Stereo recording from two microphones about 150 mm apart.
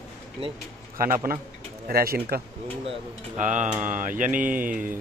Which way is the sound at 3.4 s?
55° right (ahead or behind).